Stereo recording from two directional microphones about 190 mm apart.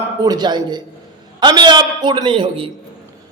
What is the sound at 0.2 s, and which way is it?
A man's voice, 20° right (ahead or behind).